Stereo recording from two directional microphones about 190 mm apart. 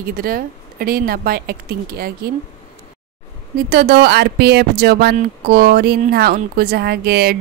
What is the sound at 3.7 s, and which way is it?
Speech, 55° right (ahead or behind).